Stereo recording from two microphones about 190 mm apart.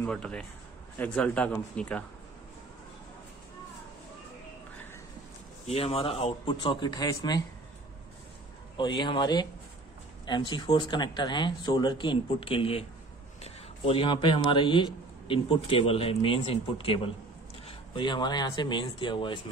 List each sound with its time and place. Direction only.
0.0 s a man's voice: 5° left (ahead or behind)
5.7 s a man's voice: 30° left (ahead or behind)
8.7 s a man's voice: 25° left (ahead or behind)